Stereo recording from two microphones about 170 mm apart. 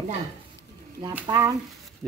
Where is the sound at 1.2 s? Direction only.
20° right (ahead or behind).